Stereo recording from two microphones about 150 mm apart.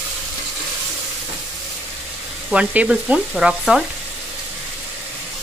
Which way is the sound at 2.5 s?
10° right (ahead or behind).